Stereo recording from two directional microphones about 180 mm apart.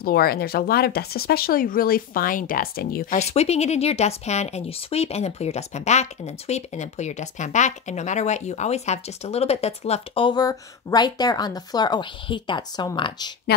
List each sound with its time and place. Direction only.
0.0 s speech: 60° left (ahead or behind)
3.2 s speech: 35° left (ahead or behind)